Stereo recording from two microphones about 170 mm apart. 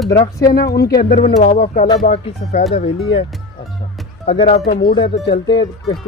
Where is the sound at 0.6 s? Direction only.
70° left (ahead or behind).